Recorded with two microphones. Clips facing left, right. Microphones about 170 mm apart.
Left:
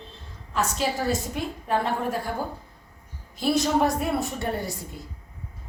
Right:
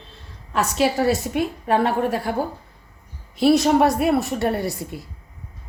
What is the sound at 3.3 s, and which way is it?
A woman's voice, 75° right (ahead or behind).